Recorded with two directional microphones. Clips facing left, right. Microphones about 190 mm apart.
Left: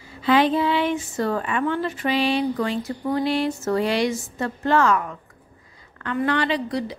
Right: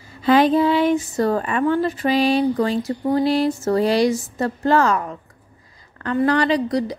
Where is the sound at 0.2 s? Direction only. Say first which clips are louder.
Right 4 dB; 40° right (ahead or behind).